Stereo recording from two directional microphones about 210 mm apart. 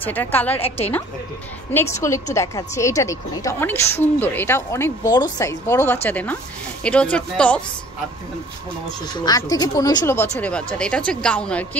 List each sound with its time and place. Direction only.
0.0 s a woman's voice: 10° left (ahead or behind)
0.6 s a woman's voice: 30° left (ahead or behind)
1.7 s a woman's voice: 10° left (ahead or behind)
9.0 s a woman's voice: 20° left (ahead or behind)